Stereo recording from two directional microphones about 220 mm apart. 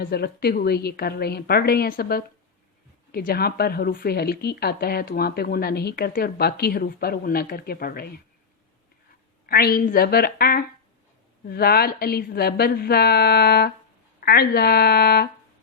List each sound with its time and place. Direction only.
0.0 s speech: 45° left (ahead or behind)
9.5 s speech: 45° left (ahead or behind)